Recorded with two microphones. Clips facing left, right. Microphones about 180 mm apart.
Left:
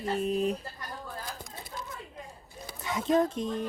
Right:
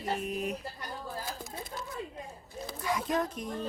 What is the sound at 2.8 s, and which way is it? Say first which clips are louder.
Speech: left 5 dB; 25° left (ahead or behind).